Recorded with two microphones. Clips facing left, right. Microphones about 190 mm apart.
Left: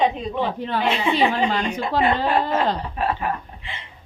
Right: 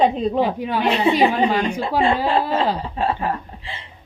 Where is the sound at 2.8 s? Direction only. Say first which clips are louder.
Right 2 dB; 25° right (ahead or behind).